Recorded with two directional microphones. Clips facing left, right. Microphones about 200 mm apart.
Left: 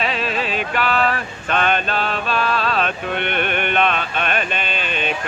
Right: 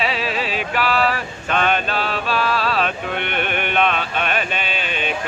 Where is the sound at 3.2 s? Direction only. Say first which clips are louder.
Left 3 dB; 50° left (ahead or behind).